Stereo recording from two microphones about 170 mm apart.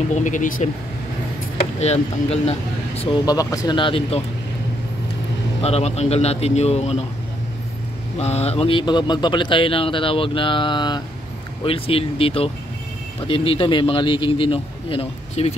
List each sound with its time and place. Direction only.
0.1 s speech: 45° left (ahead or behind)
1.8 s a man's voice: 40° left (ahead or behind)
3.3 s speech: 20° left (ahead or behind)
5.6 s a man's voice: 40° left (ahead or behind)
8.2 s a man's voice: 40° left (ahead or behind)